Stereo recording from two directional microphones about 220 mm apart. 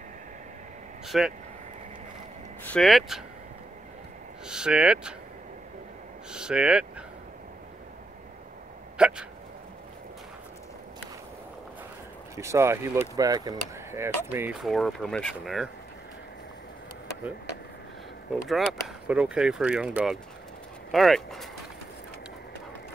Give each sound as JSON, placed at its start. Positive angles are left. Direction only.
{"t": 1.0, "sound": "speech", "side_deg": 0}
{"t": 2.6, "sound": "speech", "side_deg": 5}
{"t": 4.5, "sound": "speech", "side_deg": -5}
{"t": 6.3, "sound": "speech", "side_deg": -5}
{"t": 8.9, "sound": "speech", "side_deg": -5}
{"t": 12.4, "sound": "speech", "side_deg": -15}
{"t": 18.5, "sound": "speech", "side_deg": 0}